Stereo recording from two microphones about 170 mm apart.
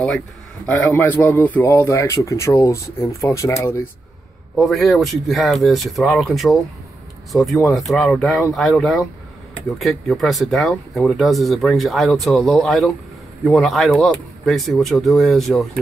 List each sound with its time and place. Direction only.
0.7 s a man's voice: 10° left (ahead or behind)
4.6 s speech: centre (ahead or behind)